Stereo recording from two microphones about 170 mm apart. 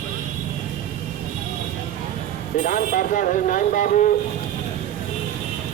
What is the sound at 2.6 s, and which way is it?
Speech, 50° left (ahead or behind).